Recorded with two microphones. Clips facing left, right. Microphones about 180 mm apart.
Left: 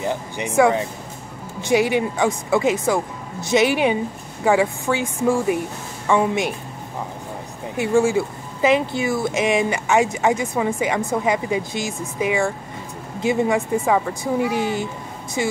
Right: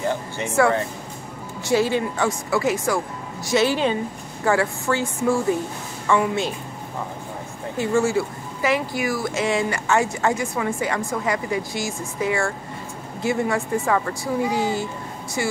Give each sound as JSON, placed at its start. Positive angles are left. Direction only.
{"t": 0.0, "sound": "speech", "side_deg": 15}
{"t": 7.7, "sound": "a woman's voice", "side_deg": 15}